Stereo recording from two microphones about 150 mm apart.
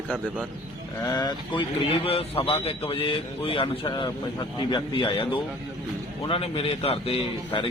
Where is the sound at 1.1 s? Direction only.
25° left (ahead or behind).